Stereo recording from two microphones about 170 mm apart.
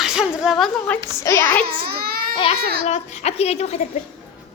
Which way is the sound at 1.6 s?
65° right (ahead or behind).